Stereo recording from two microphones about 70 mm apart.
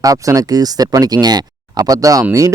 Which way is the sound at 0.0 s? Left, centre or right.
Right.